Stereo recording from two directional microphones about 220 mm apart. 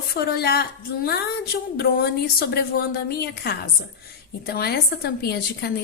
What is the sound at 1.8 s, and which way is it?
A woman's voice, 45° left (ahead or behind).